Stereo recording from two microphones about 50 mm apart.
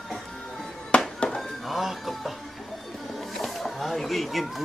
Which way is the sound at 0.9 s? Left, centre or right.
Left.